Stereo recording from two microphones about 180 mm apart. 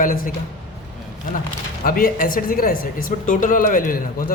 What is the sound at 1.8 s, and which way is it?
A woman's voice, 50° left (ahead or behind).